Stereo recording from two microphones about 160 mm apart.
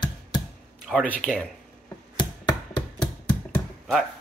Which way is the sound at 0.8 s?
5° right (ahead or behind).